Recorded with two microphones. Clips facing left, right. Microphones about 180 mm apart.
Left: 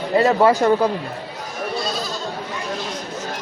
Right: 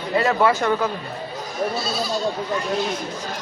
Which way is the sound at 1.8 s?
5° right (ahead or behind).